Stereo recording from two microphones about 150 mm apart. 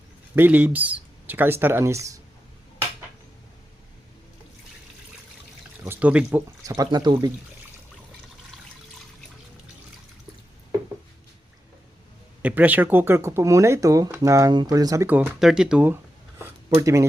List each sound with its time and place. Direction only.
0.3 s speech: 10° right (ahead or behind)
5.8 s speech: 10° right (ahead or behind)
6.7 s speech: 25° right (ahead or behind)
12.4 s speech: 10° right (ahead or behind)
16.7 s speech: 20° right (ahead or behind)